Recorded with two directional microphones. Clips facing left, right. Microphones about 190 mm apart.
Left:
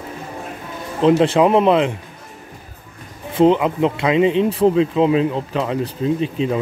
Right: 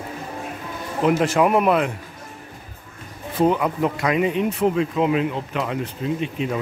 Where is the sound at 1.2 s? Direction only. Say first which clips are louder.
Left 4 dB; 25° left (ahead or behind).